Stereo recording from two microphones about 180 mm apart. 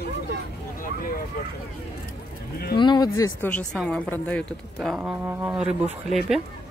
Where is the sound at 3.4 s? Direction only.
5° left (ahead or behind).